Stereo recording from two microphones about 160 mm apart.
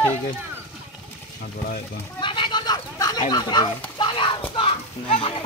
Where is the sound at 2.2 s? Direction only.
30° left (ahead or behind).